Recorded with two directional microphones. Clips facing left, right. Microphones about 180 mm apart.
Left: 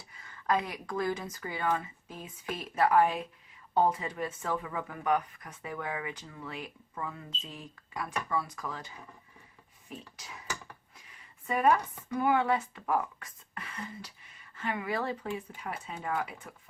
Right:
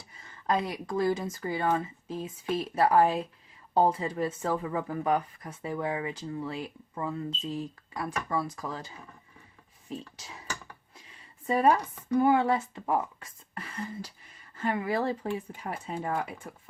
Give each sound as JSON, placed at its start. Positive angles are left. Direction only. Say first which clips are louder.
{"t": 0.1, "sound": "speech", "louder": "right 1 dB", "side_deg": -25}
{"t": 10.2, "sound": "speech", "louder": "right 1 dB", "side_deg": -25}